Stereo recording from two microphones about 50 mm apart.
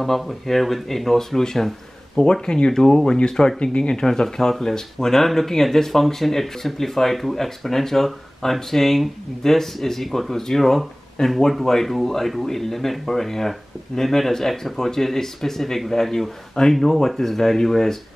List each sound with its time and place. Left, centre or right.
0.0 s speech: centre